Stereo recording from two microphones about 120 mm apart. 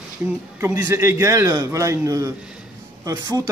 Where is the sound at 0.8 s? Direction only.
25° right (ahead or behind).